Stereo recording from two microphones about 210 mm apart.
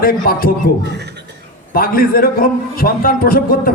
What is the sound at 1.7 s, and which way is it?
A man's voice, 45° left (ahead or behind).